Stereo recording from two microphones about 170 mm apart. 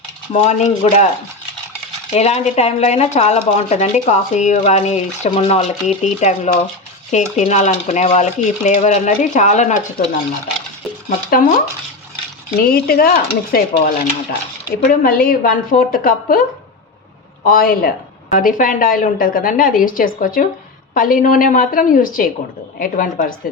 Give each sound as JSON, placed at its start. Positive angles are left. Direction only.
{"t": 0.3, "sound": "a woman's voice", "side_deg": 40}
{"t": 2.1, "sound": "a woman's voice", "side_deg": 40}
{"t": 11.3, "sound": "a woman's voice", "side_deg": 55}
{"t": 12.5, "sound": "a woman's voice", "side_deg": 60}